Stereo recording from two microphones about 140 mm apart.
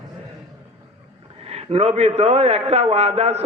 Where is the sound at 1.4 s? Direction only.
45° right (ahead or behind).